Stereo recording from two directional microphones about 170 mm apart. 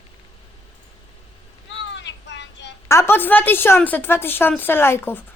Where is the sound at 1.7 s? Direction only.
90° left.